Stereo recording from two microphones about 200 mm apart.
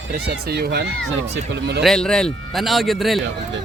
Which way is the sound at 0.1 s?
55° right (ahead or behind).